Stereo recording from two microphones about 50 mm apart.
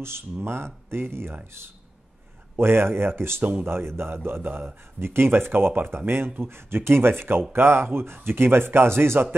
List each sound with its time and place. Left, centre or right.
0.0 s a man's voice: right
2.5 s a man's voice: right